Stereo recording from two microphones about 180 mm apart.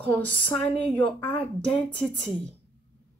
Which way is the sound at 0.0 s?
10° left (ahead or behind).